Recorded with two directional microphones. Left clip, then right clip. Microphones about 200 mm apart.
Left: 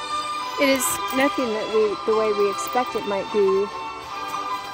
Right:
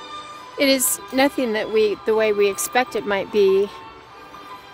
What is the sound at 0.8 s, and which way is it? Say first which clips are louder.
Speech: right 1 dB; 25° right (ahead or behind).